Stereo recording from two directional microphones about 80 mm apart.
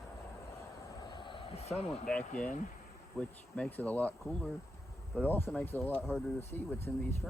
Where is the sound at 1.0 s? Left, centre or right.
Left.